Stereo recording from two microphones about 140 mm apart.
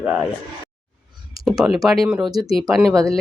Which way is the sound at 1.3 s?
Centre (ahead or behind).